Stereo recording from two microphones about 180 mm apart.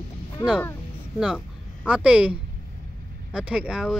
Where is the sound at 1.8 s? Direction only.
5° right (ahead or behind).